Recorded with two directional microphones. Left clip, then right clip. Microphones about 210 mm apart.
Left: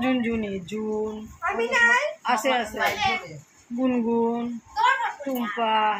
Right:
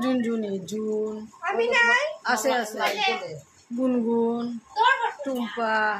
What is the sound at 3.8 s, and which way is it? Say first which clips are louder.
A child's voice: even; 5° right (ahead or behind).